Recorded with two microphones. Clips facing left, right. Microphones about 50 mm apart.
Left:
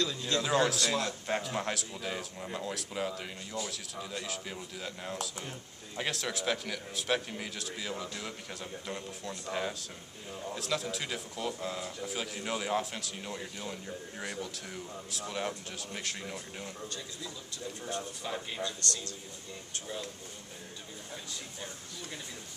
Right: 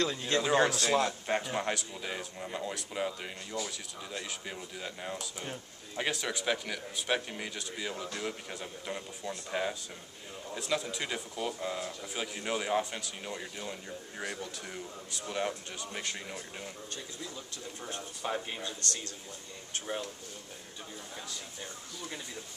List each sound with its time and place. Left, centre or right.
0.0 s speech: right
1.2 s speech: centre
17.8 s speech: right